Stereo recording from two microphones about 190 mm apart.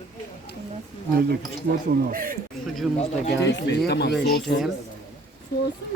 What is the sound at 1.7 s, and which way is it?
Speech, 50° right (ahead or behind).